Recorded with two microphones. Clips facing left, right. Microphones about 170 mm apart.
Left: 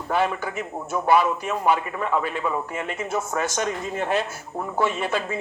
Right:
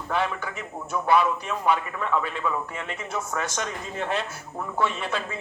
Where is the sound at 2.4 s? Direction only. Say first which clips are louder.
Left 1 dB; 30° left (ahead or behind).